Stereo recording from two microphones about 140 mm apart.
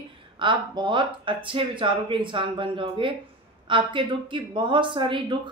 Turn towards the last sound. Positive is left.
turn(degrees=-35)  # may be behind; listen again after turning